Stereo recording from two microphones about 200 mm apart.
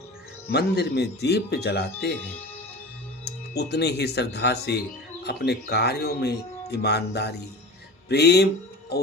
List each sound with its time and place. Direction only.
0.5 s speech: 55° left (ahead or behind)
3.2 s speech: 55° left (ahead or behind)